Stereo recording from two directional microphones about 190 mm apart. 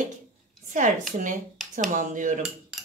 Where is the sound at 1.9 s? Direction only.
40° right (ahead or behind).